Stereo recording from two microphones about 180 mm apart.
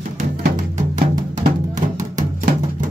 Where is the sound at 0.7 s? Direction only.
45° right (ahead or behind).